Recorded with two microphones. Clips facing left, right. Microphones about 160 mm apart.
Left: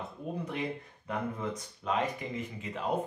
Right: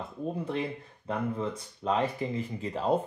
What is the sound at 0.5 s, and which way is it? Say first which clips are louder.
Speech: right 3 dB; 30° right (ahead or behind).